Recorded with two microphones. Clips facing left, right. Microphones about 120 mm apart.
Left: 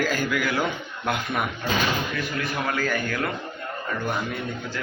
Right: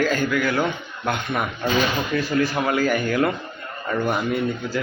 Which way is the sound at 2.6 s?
15° right (ahead or behind).